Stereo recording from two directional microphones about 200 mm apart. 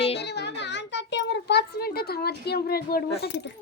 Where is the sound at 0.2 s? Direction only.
60° left (ahead or behind).